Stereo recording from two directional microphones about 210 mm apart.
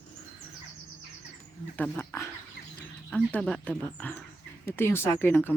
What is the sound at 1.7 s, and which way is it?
Speech, 10° left (ahead or behind).